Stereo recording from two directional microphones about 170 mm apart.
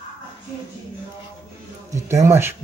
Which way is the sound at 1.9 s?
15° right (ahead or behind).